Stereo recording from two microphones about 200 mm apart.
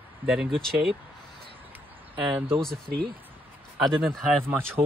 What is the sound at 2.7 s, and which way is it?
Speech, 50° right (ahead or behind).